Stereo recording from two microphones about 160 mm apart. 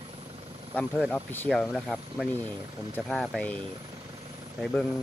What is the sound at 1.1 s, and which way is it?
Speech, 10° left (ahead or behind).